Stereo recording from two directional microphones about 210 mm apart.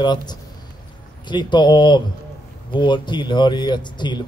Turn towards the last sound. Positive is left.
turn(degrees=20)  # may be behind; listen again after turning